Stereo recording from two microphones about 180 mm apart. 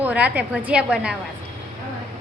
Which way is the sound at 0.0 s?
10° right (ahead or behind).